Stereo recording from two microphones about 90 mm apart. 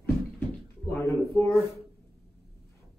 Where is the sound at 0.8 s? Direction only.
30° left (ahead or behind).